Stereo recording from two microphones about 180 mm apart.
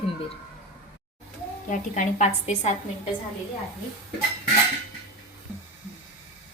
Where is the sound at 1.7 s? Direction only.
45° left (ahead or behind).